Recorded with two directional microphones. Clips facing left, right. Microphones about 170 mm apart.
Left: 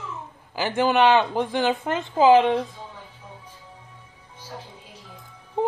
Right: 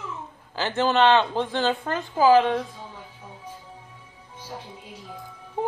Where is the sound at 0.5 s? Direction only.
10° left (ahead or behind).